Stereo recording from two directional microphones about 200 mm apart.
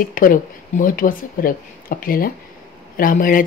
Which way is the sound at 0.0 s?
45° left (ahead or behind).